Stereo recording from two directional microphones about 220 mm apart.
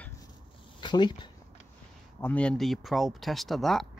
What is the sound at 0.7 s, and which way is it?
Speech, 20° left (ahead or behind).